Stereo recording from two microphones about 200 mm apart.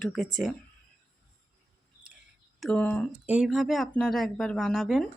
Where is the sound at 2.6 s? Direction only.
5° left (ahead or behind).